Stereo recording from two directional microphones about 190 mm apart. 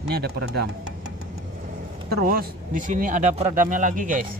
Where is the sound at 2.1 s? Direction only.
50° right (ahead or behind).